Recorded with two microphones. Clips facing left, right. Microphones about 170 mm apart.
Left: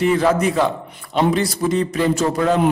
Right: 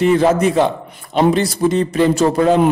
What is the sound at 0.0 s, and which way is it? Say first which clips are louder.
Speech: right 3 dB; 25° right (ahead or behind).